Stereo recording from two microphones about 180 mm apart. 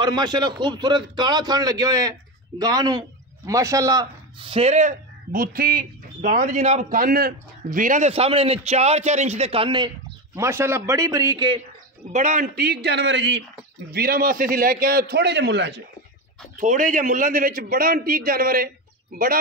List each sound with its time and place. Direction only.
0.0 s a man's voice: 25° right (ahead or behind)
4.5 s speech: 35° right (ahead or behind)
12.1 s a man's voice: 45° right (ahead or behind); by 13.4 s 80° right
13.9 s a man's voice: 55° right (ahead or behind); by 15.8 s 75° right (ahead or behind)
16.5 s a man's voice: 45° right (ahead or behind)